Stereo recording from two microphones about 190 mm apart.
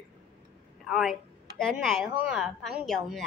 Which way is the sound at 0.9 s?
Centre (ahead or behind).